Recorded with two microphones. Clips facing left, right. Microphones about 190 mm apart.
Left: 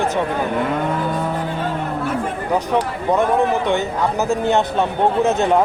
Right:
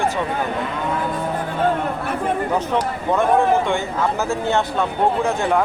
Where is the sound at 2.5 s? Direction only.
15° left (ahead or behind).